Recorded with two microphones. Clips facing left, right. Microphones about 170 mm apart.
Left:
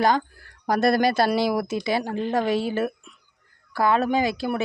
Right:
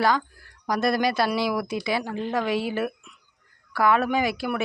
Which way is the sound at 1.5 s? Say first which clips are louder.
Left 2 dB; 45° left (ahead or behind).